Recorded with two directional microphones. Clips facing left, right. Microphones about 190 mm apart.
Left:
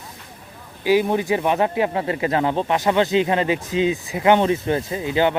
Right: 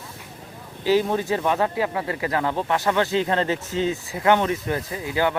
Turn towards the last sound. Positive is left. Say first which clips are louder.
# left 4 dB
turn(degrees=25)  # may be behind; listen again after turning